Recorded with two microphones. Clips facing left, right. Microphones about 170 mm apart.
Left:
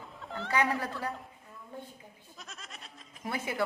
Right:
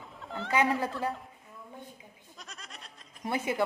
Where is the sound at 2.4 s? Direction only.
Centre (ahead or behind).